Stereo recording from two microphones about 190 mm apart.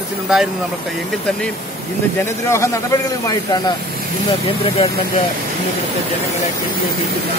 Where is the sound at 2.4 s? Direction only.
15° left (ahead or behind).